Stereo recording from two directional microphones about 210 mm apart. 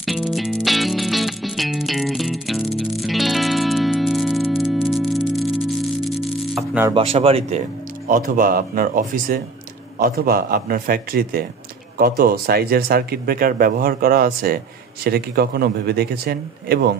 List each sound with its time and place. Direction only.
0.0 s music: centre (ahead or behind)
6.9 s speech: 25° right (ahead or behind)
8.1 s speech: 40° right (ahead or behind)